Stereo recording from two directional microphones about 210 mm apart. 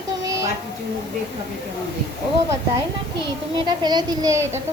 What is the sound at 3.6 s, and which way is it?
A woman's voice, 20° right (ahead or behind).